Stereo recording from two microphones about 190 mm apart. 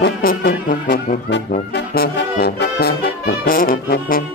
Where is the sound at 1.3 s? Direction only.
60° left (ahead or behind).